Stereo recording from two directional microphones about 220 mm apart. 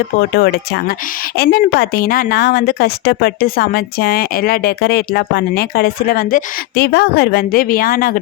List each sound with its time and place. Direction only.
0.2 s a woman's voice: 45° left (ahead or behind)